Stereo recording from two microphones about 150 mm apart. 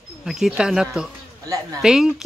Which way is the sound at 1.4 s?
25° right (ahead or behind).